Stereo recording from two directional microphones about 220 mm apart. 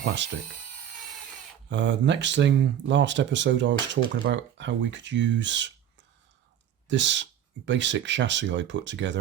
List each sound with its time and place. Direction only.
0.0 s speech: 55° right (ahead or behind)
1.7 s speech: 55° right (ahead or behind)
6.8 s speech: 55° right (ahead or behind)